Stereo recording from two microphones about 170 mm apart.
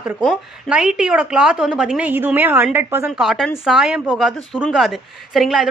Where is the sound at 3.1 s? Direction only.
Centre (ahead or behind).